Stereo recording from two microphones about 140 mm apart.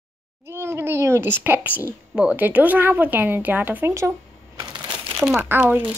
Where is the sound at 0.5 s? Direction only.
20° right (ahead or behind).